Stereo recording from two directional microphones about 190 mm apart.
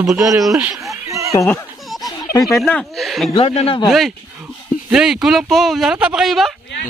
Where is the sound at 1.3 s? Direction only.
15° left (ahead or behind).